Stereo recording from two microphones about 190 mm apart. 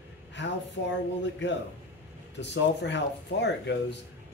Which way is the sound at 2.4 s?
65° left (ahead or behind).